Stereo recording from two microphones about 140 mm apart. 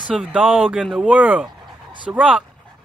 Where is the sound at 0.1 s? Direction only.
10° right (ahead or behind).